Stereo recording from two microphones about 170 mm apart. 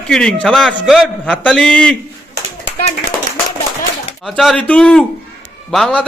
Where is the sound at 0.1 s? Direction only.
5° left (ahead or behind).